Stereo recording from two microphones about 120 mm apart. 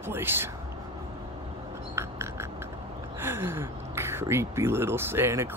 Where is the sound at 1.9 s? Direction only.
20° right (ahead or behind).